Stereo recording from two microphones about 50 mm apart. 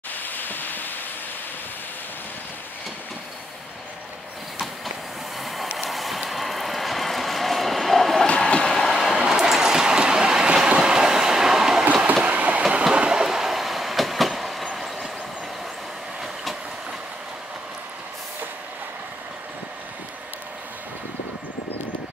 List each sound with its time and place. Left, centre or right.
0.1 s a sound: left
5.8 s vehicle: centre
8.8 s train: centre
11.8 s train: right
12.6 s train: centre